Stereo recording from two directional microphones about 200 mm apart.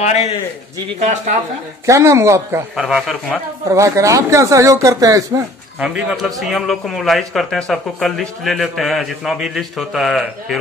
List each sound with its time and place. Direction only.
0.0 s a man's voice: 35° left (ahead or behind)
0.9 s speech: 35° right (ahead or behind)
1.9 s speech: 15° right (ahead or behind)
2.7 s a man's voice: centre (ahead or behind)
3.6 s speech: 15° right (ahead or behind)
5.8 s a man's voice: 5° right (ahead or behind)